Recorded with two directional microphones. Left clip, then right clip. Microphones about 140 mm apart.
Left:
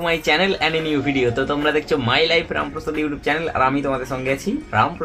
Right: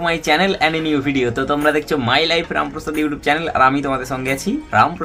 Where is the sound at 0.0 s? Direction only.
35° right (ahead or behind).